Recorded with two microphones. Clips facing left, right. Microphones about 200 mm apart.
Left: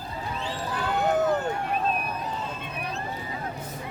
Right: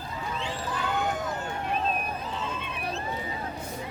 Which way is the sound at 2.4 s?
40° left (ahead or behind).